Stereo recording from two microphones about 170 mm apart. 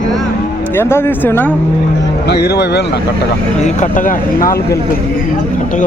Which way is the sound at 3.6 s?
45° left (ahead or behind).